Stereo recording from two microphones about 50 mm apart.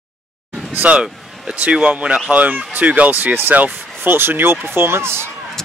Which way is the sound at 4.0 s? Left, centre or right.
Right.